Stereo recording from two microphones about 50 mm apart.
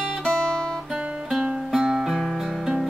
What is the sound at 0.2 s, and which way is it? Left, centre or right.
Guitar, centre.